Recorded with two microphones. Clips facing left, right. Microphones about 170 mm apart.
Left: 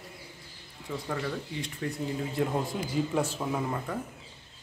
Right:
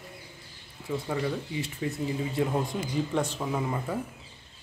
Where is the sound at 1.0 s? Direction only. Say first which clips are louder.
Right 2 dB; 10° right (ahead or behind).